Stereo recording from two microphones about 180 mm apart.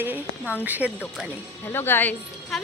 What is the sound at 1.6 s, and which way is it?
Speech, 10° left (ahead or behind).